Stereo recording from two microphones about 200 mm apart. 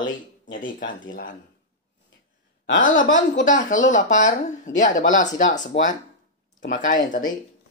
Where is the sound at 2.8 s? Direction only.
40° left (ahead or behind).